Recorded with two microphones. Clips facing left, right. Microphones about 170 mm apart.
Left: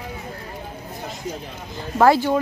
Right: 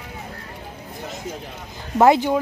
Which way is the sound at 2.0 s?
20° right (ahead or behind).